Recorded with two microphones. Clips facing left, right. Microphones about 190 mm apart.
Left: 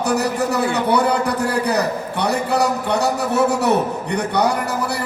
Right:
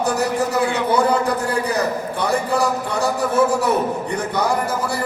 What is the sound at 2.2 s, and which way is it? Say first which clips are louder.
A man's voice: left 1 dB; 70° left (ahead or behind).